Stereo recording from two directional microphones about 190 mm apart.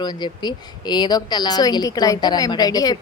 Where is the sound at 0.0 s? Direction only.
20° left (ahead or behind).